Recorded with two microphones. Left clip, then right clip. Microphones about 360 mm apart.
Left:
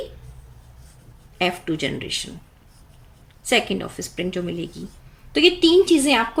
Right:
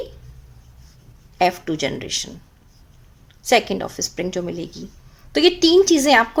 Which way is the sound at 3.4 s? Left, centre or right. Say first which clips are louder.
Right 3 dB; centre.